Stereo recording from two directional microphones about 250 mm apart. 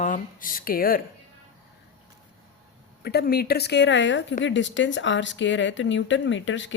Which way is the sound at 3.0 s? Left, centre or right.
Left.